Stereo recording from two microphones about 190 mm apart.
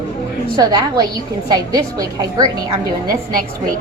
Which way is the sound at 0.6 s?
20° right (ahead or behind).